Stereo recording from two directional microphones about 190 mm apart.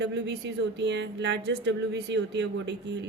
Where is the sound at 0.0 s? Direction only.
65° right (ahead or behind).